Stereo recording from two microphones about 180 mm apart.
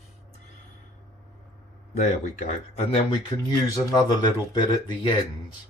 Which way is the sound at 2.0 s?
40° left (ahead or behind).